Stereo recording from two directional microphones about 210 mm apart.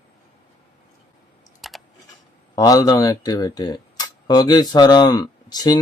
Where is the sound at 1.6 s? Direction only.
Centre (ahead or behind).